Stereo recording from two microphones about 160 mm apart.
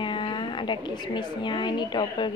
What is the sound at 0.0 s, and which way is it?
A woman's voice, 30° left (ahead or behind).